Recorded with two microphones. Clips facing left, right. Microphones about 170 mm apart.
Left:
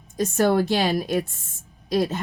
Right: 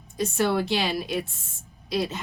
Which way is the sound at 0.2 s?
45° left (ahead or behind).